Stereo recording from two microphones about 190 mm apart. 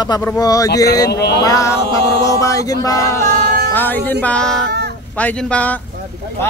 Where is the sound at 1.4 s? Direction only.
15° left (ahead or behind).